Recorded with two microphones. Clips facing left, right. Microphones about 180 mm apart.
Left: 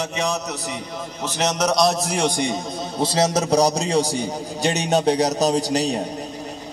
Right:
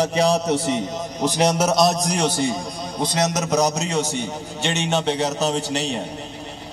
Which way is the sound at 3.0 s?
30° left (ahead or behind).